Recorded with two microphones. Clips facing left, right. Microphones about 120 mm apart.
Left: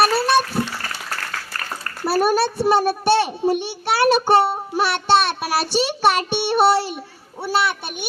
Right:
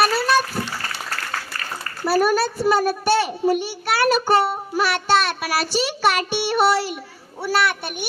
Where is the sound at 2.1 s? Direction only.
30° left (ahead or behind).